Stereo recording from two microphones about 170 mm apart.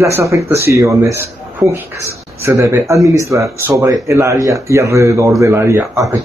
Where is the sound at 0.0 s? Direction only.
15° right (ahead or behind).